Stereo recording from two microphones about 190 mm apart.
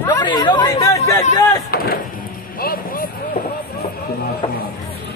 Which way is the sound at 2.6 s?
50° left (ahead or behind).